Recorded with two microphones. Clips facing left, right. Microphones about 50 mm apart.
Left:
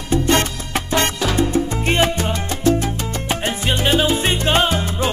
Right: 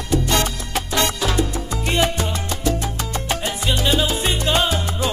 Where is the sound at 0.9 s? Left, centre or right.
Left.